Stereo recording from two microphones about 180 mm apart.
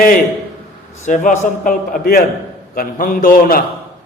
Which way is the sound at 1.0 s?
45° left (ahead or behind).